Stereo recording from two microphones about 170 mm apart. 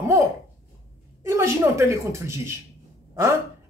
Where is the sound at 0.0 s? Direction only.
15° right (ahead or behind).